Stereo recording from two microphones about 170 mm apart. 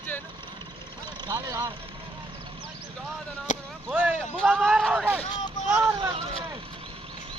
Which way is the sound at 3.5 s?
45° left (ahead or behind).